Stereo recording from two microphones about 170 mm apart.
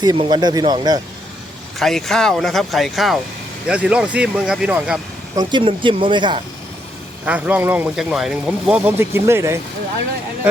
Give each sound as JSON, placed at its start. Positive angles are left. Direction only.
{"t": 0.0, "sound": "speech", "side_deg": -25}
{"t": 1.8, "sound": "speech", "side_deg": 0}
{"t": 5.4, "sound": "speech", "side_deg": -25}
{"t": 7.3, "sound": "speech", "side_deg": -10}